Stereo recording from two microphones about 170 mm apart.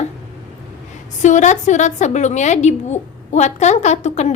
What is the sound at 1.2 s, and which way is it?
A woman's voice, 45° left (ahead or behind).